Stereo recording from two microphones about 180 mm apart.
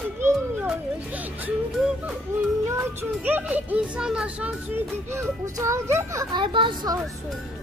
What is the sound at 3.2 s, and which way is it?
Speech, 10° right (ahead or behind).